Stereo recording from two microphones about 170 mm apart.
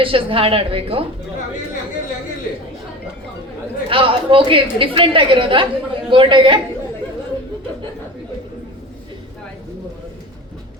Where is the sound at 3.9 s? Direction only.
30° right (ahead or behind).